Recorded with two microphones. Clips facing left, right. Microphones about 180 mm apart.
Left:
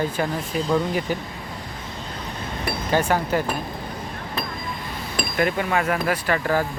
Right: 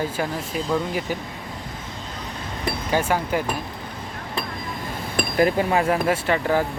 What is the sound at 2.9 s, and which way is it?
Speech, 10° right (ahead or behind).